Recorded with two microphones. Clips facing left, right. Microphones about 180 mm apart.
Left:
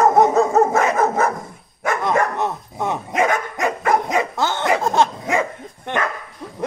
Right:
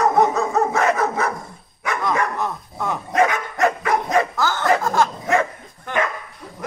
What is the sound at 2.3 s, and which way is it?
Dog, 25° left (ahead or behind).